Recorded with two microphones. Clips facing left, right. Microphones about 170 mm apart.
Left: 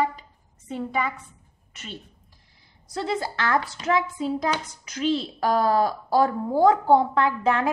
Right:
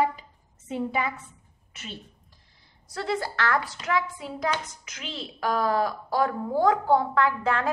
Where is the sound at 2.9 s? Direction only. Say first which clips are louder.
Left 2 dB; 20° left (ahead or behind).